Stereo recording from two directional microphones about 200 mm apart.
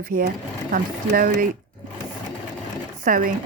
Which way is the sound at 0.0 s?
45° right (ahead or behind).